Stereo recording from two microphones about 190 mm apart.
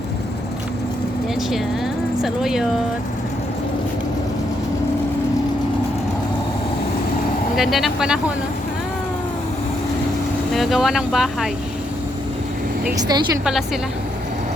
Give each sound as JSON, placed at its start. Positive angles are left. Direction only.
{"t": 2.2, "sound": "speech", "side_deg": 0}
{"t": 7.5, "sound": "speech", "side_deg": 0}
{"t": 10.5, "sound": "speech", "side_deg": 0}
{"t": 13.0, "sound": "speech", "side_deg": -20}
{"t": 13.4, "sound": "speech", "side_deg": 0}